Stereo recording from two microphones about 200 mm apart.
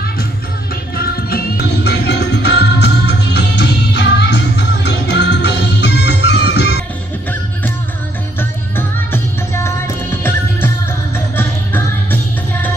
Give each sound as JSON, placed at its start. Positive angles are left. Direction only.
{"t": 0.9, "sound": "music", "side_deg": 50}
{"t": 8.4, "sound": "music", "side_deg": 10}
{"t": 11.1, "sound": "music", "side_deg": 10}